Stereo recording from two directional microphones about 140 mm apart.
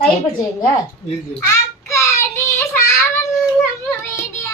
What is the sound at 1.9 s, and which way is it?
Child singing, 20° left (ahead or behind).